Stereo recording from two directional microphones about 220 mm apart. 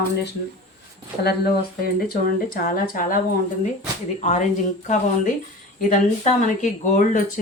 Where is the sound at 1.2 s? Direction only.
45° left (ahead or behind).